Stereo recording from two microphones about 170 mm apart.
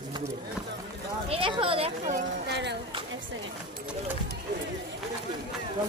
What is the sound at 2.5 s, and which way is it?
Speech, 90° right.